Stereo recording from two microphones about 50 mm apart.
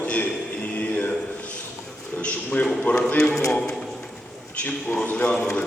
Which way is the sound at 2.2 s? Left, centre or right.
Left.